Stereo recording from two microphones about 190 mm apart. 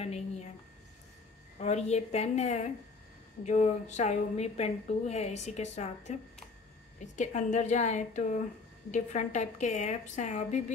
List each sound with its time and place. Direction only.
1.6 s a woman's voice: 35° left (ahead or behind)